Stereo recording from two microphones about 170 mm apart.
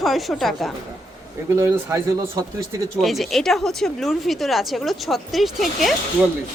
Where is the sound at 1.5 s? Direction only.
15° right (ahead or behind).